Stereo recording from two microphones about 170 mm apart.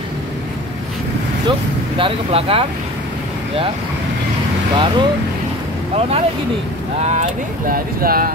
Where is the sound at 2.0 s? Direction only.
30° right (ahead or behind).